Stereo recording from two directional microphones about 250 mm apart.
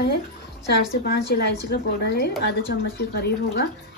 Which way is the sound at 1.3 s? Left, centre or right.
Left.